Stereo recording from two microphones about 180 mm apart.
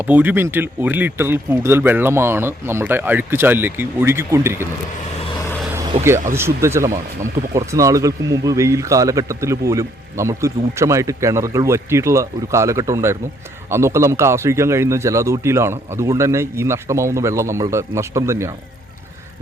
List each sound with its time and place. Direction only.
0.0 s speech: 10° right (ahead or behind)
6.3 s speech: 15° right (ahead or behind)